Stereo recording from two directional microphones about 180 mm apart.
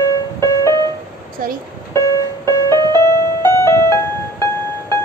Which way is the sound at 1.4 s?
50° right (ahead or behind).